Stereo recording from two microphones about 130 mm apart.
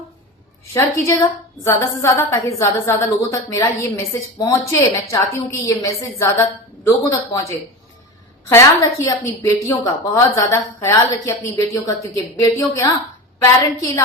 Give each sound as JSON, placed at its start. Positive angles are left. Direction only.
{"t": 0.7, "sound": "a woman's voice", "side_deg": 20}